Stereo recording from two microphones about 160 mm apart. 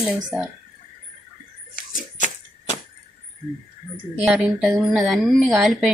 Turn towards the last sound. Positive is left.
turn(degrees=0)  # may be behind; listen again after turning